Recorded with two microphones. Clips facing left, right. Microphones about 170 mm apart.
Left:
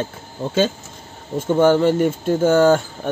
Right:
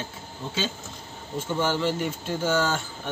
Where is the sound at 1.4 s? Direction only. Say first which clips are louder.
Left 11 dB; 55° left (ahead or behind).